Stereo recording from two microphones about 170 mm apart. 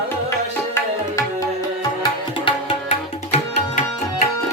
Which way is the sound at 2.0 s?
35° left (ahead or behind).